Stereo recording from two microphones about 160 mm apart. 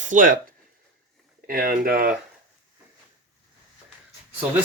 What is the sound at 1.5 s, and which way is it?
Speech, 65° right (ahead or behind).